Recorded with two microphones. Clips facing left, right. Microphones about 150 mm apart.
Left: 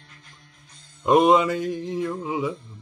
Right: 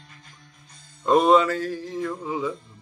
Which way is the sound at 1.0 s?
15° left (ahead or behind).